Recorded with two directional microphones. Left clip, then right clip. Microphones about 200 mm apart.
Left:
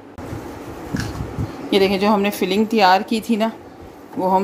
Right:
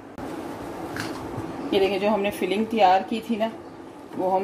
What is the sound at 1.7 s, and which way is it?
A woman's voice, 45° left (ahead or behind).